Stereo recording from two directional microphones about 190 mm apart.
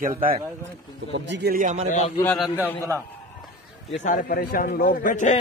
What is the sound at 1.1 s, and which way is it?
Speech, 65° right (ahead or behind).